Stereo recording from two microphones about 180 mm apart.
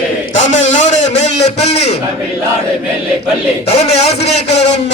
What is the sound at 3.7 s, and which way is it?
Speech, 35° left (ahead or behind).